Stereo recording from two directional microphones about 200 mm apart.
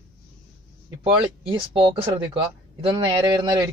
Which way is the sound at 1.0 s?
25° right (ahead or behind).